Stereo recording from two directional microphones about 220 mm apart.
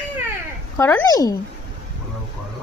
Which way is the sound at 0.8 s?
10° left (ahead or behind).